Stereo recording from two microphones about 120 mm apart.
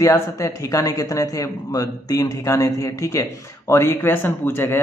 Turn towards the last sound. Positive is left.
turn(degrees=20)  # may be behind; listen again after turning